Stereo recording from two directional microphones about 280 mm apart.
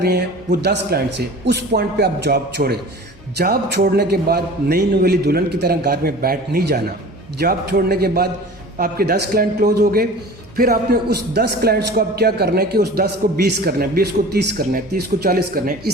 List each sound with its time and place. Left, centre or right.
0.0 s a man's voice: right